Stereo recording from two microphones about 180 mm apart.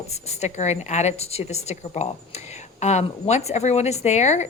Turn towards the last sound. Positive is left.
turn(degrees=40)  # may be behind; listen again after turning